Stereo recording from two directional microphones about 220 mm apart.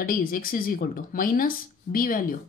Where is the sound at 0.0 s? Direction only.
40° left (ahead or behind).